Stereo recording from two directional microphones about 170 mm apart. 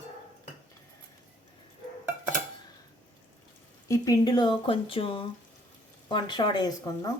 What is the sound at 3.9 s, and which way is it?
Speech, 20° left (ahead or behind).